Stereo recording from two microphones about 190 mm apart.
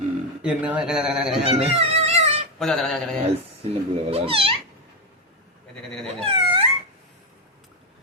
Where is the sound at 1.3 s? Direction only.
30° right (ahead or behind).